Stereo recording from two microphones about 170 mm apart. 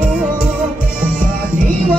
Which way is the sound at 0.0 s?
5° right (ahead or behind).